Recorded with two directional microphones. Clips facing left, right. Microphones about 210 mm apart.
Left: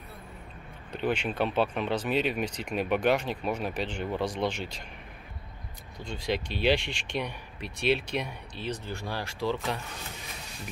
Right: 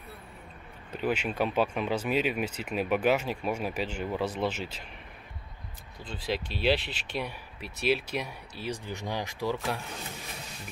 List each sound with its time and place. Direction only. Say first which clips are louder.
0.9 s speech: even; 5° right (ahead or behind)
6.0 s speech: left 2 dB; 5° right (ahead or behind)